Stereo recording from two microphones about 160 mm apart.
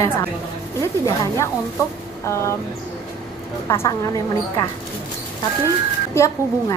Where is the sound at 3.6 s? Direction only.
15° left (ahead or behind).